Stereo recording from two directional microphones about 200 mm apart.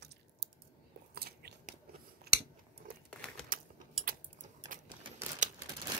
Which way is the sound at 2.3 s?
50° right (ahead or behind).